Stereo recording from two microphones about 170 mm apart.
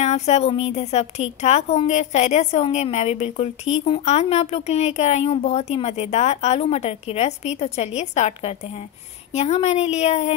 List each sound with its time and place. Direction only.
0.0 s a woman's voice: 40° left (ahead or behind)